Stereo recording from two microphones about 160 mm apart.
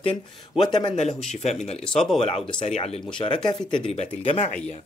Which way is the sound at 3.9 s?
40° left (ahead or behind).